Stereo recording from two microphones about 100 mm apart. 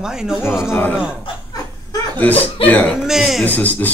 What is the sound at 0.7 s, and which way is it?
Speech, 20° left (ahead or behind).